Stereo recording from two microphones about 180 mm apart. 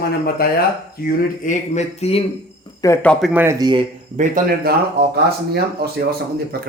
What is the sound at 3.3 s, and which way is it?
Speech, 10° right (ahead or behind).